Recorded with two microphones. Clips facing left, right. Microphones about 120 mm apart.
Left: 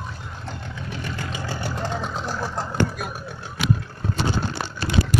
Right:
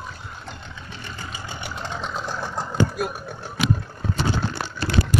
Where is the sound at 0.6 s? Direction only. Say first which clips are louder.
Left 6 dB; 60° left (ahead or behind); by 1.5 s 85° left.